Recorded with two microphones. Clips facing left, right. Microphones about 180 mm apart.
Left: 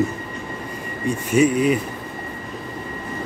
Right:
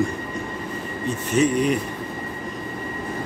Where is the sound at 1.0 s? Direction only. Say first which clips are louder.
Left 3 dB; 10° left (ahead or behind).